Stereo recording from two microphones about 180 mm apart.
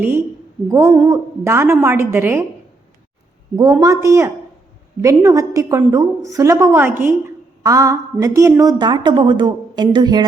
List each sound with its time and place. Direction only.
0.0 s a woman's voice: 15° right (ahead or behind)
3.5 s a woman's voice: 20° right (ahead or behind)